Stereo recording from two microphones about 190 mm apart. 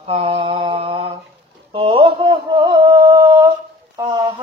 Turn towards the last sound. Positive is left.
turn(degrees=-25)  # may be behind; listen again after turning